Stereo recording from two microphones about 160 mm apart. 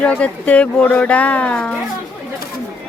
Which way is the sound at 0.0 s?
10° left (ahead or behind).